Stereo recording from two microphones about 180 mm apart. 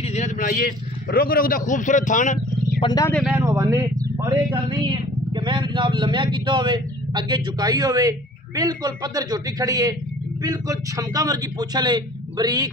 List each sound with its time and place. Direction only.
0.0 s a man's voice: 40° left (ahead or behind)
2.8 s speech: 20° left (ahead or behind)
3.1 s speech: centre (ahead or behind)
3.3 s speech: 15° right (ahead or behind)